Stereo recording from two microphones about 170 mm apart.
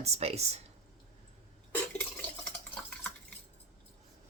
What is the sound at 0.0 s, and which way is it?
Speech, 40° right (ahead or behind).